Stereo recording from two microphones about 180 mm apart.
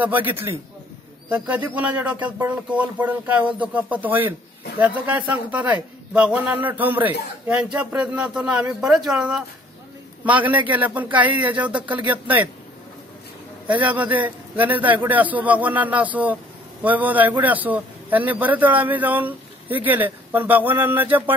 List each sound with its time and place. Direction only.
0.0 s speech: 10° right (ahead or behind)
13.7 s speech: 10° right (ahead or behind)